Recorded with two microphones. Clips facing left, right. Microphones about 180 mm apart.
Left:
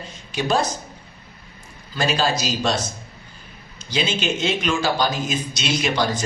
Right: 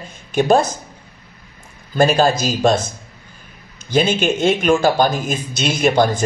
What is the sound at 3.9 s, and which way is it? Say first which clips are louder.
Speech: right 7 dB; 50° right (ahead or behind).